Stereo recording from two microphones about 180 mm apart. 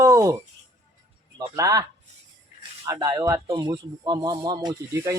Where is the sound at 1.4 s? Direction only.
20° right (ahead or behind).